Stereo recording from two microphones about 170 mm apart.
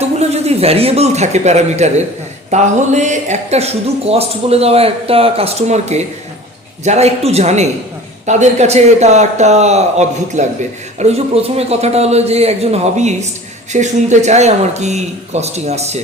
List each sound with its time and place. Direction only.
0.0 s speech: 40° right (ahead or behind)